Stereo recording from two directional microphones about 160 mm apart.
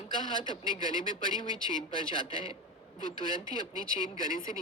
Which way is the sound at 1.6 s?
30° left (ahead or behind).